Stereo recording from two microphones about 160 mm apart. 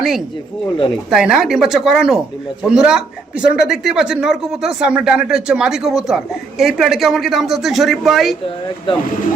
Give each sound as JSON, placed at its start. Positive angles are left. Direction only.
{"t": 1.1, "sound": "speech", "side_deg": -5}
{"t": 8.9, "sound": "speech", "side_deg": 30}